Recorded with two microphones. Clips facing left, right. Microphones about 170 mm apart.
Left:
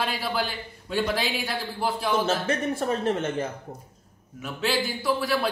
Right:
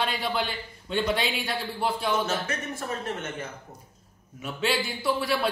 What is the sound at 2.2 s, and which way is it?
A man's voice, 30° left (ahead or behind).